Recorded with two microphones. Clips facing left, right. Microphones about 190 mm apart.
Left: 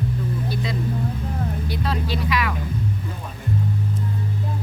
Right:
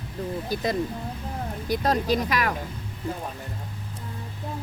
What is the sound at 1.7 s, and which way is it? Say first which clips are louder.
Speech: right 7 dB; 45° right (ahead or behind).